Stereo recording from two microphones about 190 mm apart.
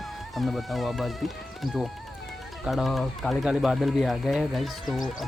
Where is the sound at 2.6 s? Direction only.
Centre (ahead or behind).